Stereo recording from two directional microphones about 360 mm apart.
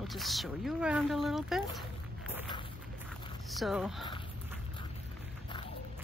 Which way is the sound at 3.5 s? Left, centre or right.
Centre.